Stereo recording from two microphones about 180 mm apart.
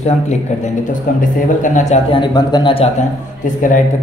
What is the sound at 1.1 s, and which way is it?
A man's voice, 50° left (ahead or behind).